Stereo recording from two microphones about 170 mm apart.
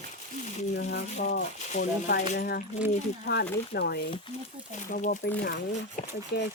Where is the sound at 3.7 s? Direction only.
80° left.